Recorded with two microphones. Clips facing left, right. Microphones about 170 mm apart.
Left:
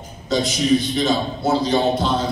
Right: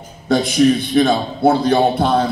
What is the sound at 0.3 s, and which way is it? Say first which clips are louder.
A man's voice: right 4 dB; 60° right (ahead or behind).